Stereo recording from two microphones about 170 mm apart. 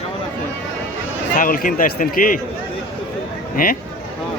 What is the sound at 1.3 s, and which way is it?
Speech, 55° left (ahead or behind).